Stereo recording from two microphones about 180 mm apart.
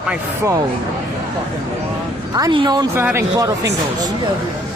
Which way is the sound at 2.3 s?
25° right (ahead or behind).